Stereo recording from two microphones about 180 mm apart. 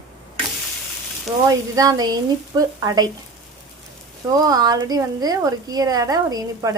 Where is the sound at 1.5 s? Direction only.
20° right (ahead or behind).